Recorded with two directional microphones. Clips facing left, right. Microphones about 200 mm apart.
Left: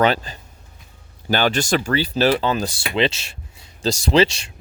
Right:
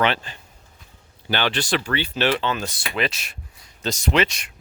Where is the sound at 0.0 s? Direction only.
40° left (ahead or behind).